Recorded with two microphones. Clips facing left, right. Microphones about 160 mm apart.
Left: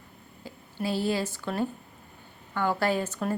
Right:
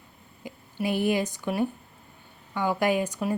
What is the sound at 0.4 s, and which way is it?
A woman's voice, 15° right (ahead or behind).